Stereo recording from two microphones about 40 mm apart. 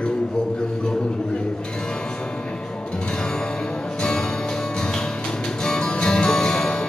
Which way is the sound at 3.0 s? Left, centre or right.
Centre.